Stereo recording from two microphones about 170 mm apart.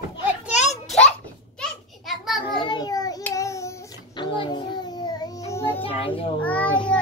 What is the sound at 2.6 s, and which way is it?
Child singing, 25° left (ahead or behind).